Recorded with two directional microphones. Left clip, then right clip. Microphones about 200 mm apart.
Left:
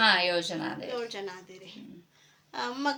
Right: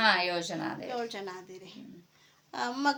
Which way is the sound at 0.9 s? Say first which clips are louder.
Left 1 dB; 55° right (ahead or behind).